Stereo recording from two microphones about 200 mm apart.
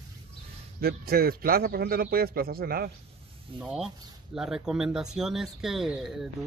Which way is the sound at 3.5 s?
5° right (ahead or behind).